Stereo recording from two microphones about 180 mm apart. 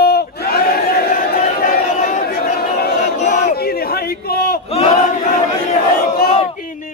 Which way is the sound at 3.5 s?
60° left (ahead or behind).